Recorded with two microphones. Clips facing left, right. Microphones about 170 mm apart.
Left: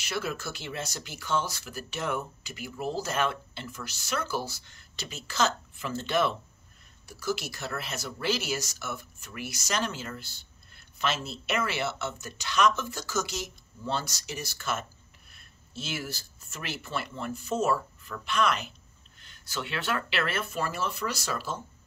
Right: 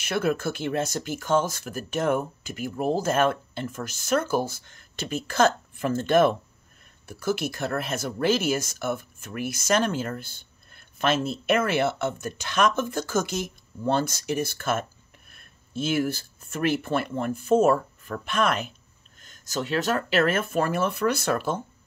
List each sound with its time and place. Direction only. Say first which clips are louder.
0.0 s speech: right 8 dB; 55° right (ahead or behind)